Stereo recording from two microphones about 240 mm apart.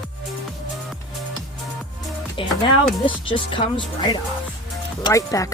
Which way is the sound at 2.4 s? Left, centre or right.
Left.